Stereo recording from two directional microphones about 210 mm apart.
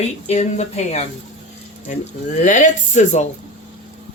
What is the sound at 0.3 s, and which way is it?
Speech, 30° left (ahead or behind).